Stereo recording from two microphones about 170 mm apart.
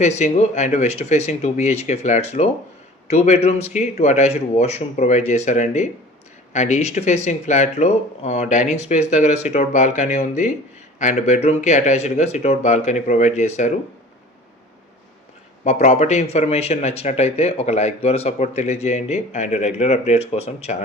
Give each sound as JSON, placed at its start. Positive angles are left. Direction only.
{"t": 0.0, "sound": "speech", "side_deg": 40}
{"t": 15.6, "sound": "speech", "side_deg": 40}